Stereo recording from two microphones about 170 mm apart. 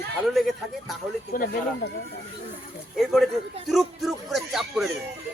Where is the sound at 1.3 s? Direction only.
65° left (ahead or behind).